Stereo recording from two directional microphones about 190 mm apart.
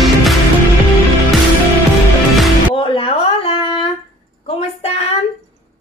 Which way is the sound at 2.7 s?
25° left (ahead or behind).